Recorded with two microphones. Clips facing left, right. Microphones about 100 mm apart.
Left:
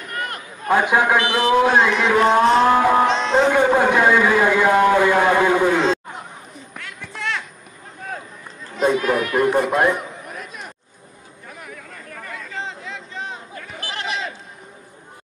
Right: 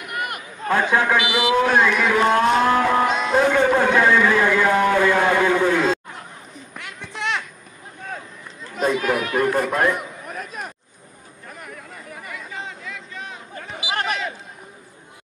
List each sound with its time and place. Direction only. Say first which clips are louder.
0.0 s chatter: even; 10° right (ahead or behind)
0.7 s a man's voice: left 2 dB; 15° left (ahead or behind)
1.2 s a man's voice: left 2 dB; 10° right (ahead or behind)
1.5 s a man's voice: left 2 dB; 15° left (ahead or behind)
2.0 s speech: left 2 dB; centre (ahead or behind)
2.7 s a man's voice: left 3 dB; 15° left (ahead or behind)
3.1 s speech: left 2 dB; 5° right (ahead or behind)
3.4 s a man's voice: left 1 dB; 15° left (ahead or behind)
6.8 s a sound: right 1 dB; 20° right (ahead or behind)
8.8 s speech: left 2 dB; 35° left (ahead or behind)
9.5 s speech: left 3 dB; 25° left (ahead or behind)
11.4 s a sound: even; centre (ahead or behind)
12.5 s a sound: left 5 dB; 30° left (ahead or behind)
13.9 s a sound: right 3 dB; 50° right (ahead or behind)